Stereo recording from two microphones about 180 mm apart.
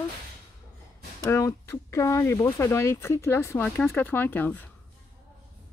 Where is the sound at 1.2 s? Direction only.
15° left (ahead or behind).